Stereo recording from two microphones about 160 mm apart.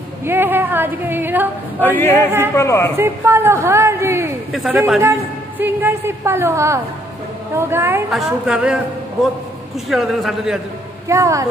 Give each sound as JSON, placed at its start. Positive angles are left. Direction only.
{"t": 0.2, "sound": "a woman's voice", "side_deg": -15}
{"t": 1.8, "sound": "a sound", "side_deg": 10}
{"t": 3.0, "sound": "a woman's voice", "side_deg": -15}
{"t": 4.5, "sound": "a man's voice", "side_deg": 0}
{"t": 5.0, "sound": "a woman's voice", "side_deg": -15}
{"t": 8.1, "sound": "a man's voice", "side_deg": 0}
{"t": 9.8, "sound": "a man's voice", "side_deg": 0}
{"t": 11.1, "sound": "speech", "side_deg": -20}